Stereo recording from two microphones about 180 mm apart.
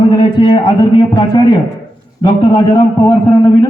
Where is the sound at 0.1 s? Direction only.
25° left (ahead or behind).